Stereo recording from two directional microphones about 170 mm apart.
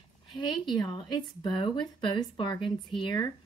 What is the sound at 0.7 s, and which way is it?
Speech, 25° left (ahead or behind).